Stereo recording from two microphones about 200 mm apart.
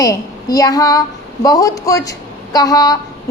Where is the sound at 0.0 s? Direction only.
15° left (ahead or behind).